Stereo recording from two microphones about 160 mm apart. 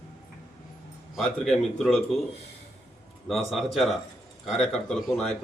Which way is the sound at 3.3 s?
Centre (ahead or behind).